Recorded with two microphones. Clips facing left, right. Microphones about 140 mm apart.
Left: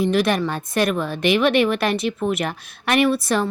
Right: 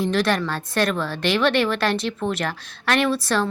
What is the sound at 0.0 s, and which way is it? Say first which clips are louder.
Speech: left 2 dB; 10° left (ahead or behind).